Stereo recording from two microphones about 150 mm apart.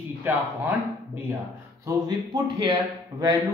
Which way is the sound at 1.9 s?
25° right (ahead or behind).